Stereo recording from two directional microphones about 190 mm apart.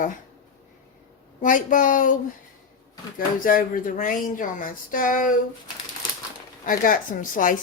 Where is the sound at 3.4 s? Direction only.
45° left (ahead or behind).